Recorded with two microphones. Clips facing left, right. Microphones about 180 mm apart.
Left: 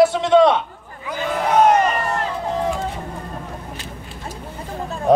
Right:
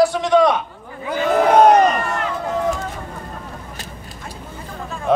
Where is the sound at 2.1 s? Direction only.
35° left (ahead or behind).